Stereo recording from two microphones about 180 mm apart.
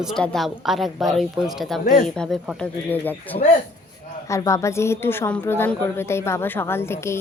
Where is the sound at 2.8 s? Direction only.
10° left (ahead or behind).